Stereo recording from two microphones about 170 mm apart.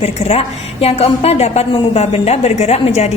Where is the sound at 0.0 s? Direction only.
35° left (ahead or behind).